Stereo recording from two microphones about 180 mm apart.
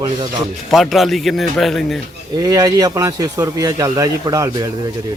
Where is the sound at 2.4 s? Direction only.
20° right (ahead or behind).